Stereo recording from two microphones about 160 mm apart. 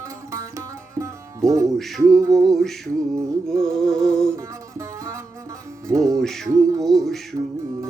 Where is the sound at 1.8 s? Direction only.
Centre (ahead or behind).